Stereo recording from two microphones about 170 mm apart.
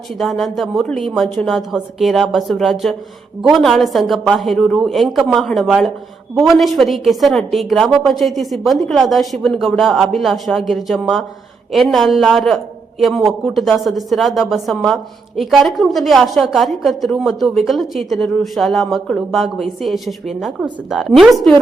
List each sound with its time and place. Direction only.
0.1 s speech: centre (ahead or behind)